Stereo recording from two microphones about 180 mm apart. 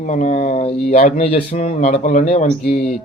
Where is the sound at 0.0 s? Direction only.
45° left (ahead or behind).